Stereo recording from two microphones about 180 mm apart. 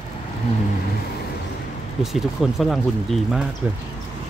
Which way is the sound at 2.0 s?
Centre (ahead or behind).